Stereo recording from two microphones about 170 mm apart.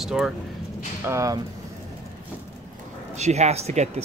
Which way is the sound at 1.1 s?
20° right (ahead or behind).